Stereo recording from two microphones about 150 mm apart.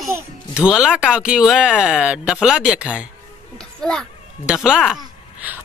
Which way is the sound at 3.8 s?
5° left (ahead or behind).